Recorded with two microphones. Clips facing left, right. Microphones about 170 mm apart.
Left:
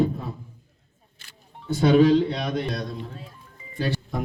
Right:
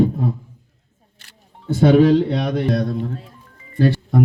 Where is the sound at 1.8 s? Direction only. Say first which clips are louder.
Right 4 dB; 55° right (ahead or behind).